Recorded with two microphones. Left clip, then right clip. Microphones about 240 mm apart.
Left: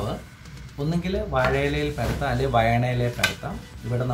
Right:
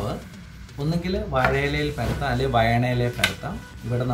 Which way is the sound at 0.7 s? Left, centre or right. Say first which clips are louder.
Even; centre.